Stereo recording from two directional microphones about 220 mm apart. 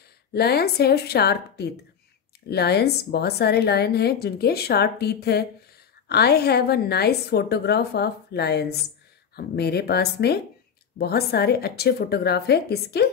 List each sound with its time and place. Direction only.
0.3 s a woman's voice: 45° left (ahead or behind)